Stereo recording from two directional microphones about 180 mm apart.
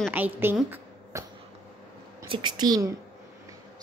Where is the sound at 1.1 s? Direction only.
15° right (ahead or behind).